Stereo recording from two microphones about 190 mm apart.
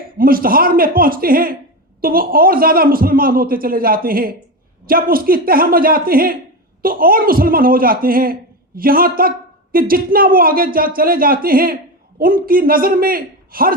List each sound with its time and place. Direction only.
0.2 s a man's voice: 50° right (ahead or behind)